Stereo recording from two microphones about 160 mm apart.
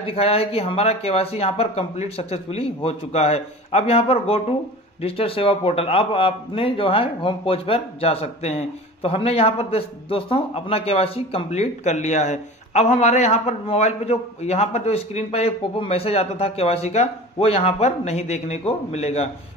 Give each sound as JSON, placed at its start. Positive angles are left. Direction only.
{"t": 0.0, "sound": "a man's voice", "side_deg": 35}